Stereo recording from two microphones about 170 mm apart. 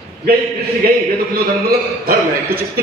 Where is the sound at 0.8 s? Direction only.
60° right (ahead or behind).